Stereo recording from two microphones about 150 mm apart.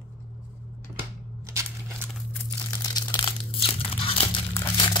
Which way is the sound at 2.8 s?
25° left (ahead or behind).